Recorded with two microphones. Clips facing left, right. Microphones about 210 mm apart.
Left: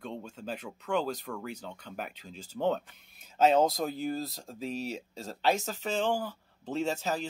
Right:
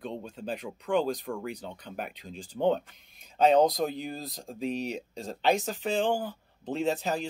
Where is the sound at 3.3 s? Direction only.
5° left (ahead or behind).